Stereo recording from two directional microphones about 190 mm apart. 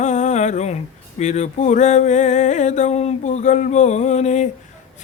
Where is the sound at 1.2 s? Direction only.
35° left (ahead or behind).